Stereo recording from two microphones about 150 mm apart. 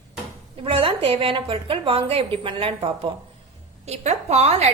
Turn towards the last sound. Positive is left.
turn(degrees=-45)  # may be behind; listen again after turning